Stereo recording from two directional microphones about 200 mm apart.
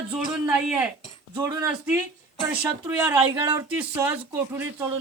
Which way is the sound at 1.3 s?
20° right (ahead or behind).